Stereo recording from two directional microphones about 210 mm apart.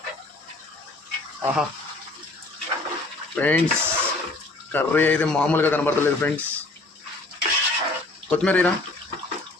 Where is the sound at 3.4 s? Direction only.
10° left (ahead or behind).